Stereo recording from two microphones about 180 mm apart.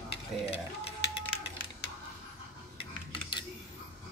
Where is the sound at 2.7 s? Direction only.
30° left (ahead or behind).